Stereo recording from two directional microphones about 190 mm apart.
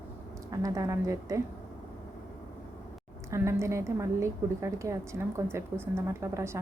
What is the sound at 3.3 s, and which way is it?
A woman's voice, 15° right (ahead or behind).